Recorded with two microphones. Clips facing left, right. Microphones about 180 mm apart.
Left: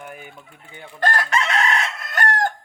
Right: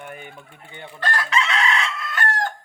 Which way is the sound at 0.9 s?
45° left (ahead or behind).